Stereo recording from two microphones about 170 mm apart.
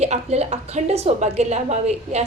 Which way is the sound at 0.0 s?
40° right (ahead or behind).